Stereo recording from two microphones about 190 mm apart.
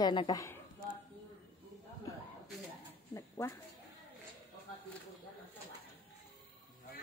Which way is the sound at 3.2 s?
15° left (ahead or behind).